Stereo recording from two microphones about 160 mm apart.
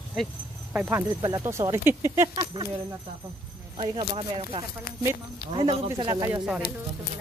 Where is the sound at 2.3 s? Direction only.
30° right (ahead or behind).